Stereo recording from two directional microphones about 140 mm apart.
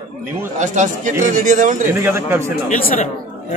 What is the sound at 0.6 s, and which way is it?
A man's voice, 60° right (ahead or behind).